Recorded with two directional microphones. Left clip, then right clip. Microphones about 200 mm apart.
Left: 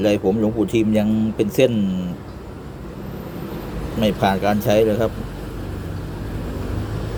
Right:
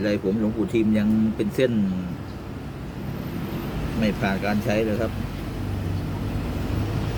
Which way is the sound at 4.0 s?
25° left (ahead or behind).